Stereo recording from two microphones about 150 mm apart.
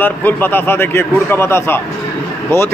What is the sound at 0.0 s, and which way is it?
A man's voice, 15° left (ahead or behind).